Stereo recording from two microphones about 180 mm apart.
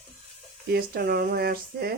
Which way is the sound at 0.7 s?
60° right (ahead or behind).